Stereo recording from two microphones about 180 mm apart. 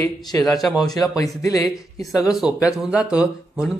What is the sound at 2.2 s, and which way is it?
Speech, 5° right (ahead or behind).